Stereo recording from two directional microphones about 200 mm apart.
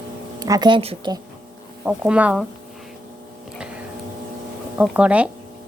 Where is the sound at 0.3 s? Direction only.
20° right (ahead or behind).